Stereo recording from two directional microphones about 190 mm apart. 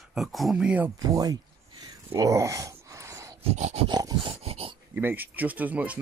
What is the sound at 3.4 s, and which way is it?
Dog, 35° right (ahead or behind).